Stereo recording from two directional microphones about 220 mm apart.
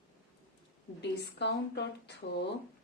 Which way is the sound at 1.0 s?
50° left (ahead or behind).